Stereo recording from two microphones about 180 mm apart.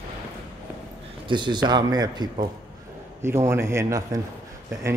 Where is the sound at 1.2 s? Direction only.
25° right (ahead or behind).